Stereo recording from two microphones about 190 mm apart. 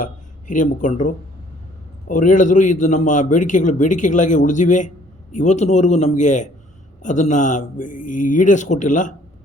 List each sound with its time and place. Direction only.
0.0 s a man's voice: 45° left (ahead or behind)